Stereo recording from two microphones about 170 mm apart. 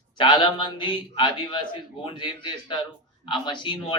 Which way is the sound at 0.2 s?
25° left (ahead or behind).